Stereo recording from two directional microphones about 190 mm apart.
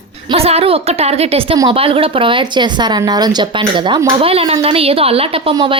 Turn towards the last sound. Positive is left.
turn(degrees=-25)  # may be behind; listen again after turning